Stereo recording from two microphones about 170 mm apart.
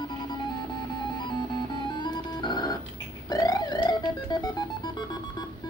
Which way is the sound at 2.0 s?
25° left (ahead or behind).